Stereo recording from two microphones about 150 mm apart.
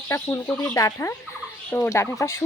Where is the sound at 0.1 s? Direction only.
15° left (ahead or behind).